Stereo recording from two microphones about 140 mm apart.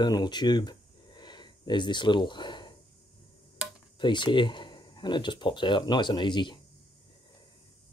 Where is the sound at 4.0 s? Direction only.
35° left (ahead or behind).